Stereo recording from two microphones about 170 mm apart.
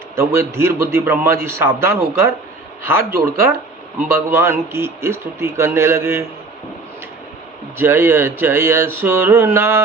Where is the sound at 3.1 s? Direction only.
55° right (ahead or behind).